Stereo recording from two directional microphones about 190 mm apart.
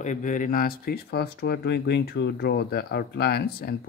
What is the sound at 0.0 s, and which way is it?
Speech, 40° left (ahead or behind).